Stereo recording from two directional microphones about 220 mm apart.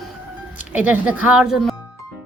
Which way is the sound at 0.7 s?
5° right (ahead or behind).